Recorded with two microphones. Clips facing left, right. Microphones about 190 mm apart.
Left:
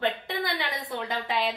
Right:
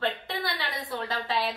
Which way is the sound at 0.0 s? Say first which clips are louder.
Left 2 dB; 20° left (ahead or behind).